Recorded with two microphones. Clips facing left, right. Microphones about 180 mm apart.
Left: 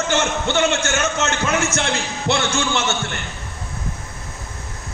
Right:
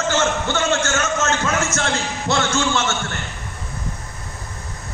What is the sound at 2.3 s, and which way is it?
Speech, 25° left (ahead or behind).